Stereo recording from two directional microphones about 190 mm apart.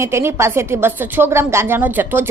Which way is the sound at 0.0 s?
15° right (ahead or behind).